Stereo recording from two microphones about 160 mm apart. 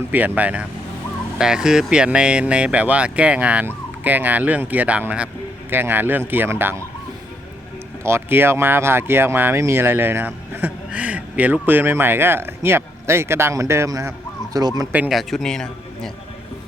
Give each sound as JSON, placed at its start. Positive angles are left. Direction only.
{"t": 0.1, "sound": "speech", "side_deg": -10}
{"t": 8.0, "sound": "speech", "side_deg": -15}
{"t": 14.9, "sound": "a man's voice", "side_deg": -5}